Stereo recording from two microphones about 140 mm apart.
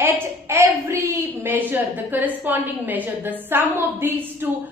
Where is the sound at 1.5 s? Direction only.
15° right (ahead or behind).